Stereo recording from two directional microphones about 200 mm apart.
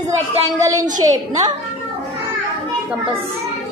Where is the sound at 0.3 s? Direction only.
15° right (ahead or behind).